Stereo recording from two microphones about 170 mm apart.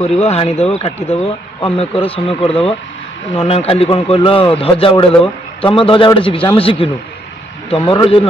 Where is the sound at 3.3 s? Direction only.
35° left (ahead or behind).